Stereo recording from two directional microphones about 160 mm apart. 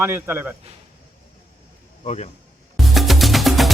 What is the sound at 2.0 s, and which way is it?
Speech, 45° left (ahead or behind).